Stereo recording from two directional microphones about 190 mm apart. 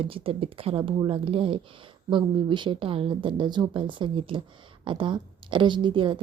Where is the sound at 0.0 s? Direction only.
30° right (ahead or behind).